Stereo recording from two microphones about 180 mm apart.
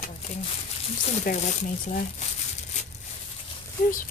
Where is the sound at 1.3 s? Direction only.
50° left (ahead or behind).